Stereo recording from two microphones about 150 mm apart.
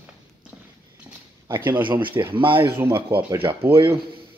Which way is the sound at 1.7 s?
30° right (ahead or behind).